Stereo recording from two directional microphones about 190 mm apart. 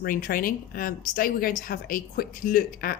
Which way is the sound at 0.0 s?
50° left (ahead or behind).